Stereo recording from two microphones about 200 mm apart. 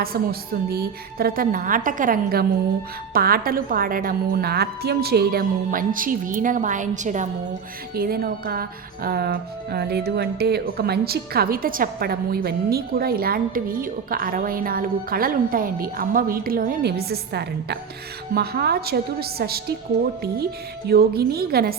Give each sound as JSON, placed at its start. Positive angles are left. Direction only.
{"t": 0.0, "sound": "speech", "side_deg": -50}
{"t": 7.9, "sound": "speech", "side_deg": -50}